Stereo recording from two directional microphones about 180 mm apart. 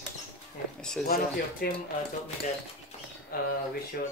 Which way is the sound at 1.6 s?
55° left (ahead or behind).